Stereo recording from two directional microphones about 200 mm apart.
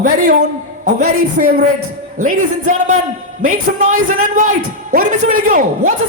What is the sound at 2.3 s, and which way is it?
Music, 90° right.